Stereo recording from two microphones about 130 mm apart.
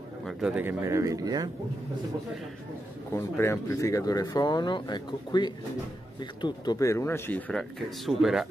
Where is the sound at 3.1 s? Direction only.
20° left (ahead or behind).